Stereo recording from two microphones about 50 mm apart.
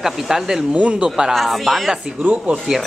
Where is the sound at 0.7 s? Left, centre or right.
Right.